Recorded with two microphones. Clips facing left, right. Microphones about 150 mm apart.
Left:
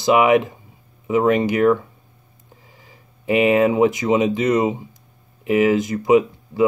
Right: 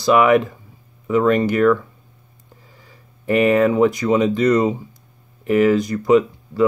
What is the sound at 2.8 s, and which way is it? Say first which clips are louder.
Speech: even; 15° left (ahead or behind).